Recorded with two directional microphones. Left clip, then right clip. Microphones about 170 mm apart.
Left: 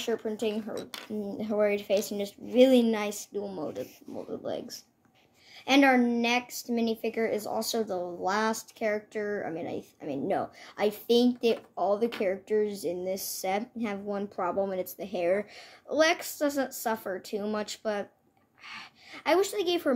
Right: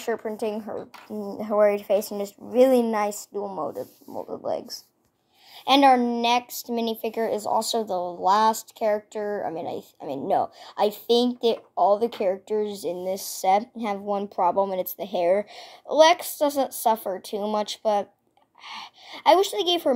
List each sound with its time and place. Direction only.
0.0 s a woman's voice: 5° right (ahead or behind)
0.7 s speech: 25° right (ahead or behind)
1.4 s a woman's voice: centre (ahead or behind)
1.8 s speech: 40° right (ahead or behind)
2.0 s a woman's voice: centre (ahead or behind)